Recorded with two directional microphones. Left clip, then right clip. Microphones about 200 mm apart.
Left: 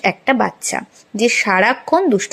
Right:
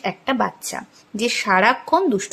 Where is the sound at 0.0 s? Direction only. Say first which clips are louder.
Left 6 dB; 20° left (ahead or behind).